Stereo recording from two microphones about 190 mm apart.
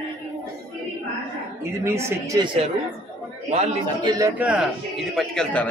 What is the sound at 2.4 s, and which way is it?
Speech, 30° right (ahead or behind).